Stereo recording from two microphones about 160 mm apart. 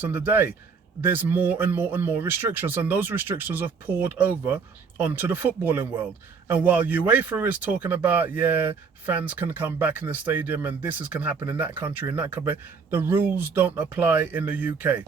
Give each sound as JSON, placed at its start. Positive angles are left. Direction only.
{"t": 0.0, "sound": "speech", "side_deg": -10}